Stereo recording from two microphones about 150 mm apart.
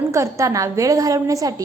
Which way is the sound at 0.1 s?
20° right (ahead or behind).